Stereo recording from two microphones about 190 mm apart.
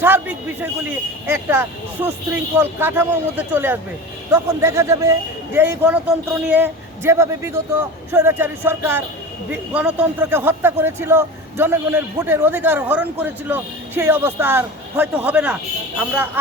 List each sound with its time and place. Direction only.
0.0 s a man's voice: 10° right (ahead or behind)